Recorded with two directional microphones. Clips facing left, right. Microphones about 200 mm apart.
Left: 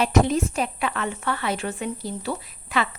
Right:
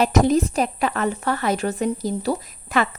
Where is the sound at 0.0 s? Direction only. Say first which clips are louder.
Right 3 dB; 40° right (ahead or behind).